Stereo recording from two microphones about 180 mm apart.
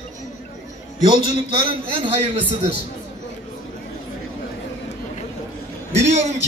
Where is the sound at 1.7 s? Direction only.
30° right (ahead or behind).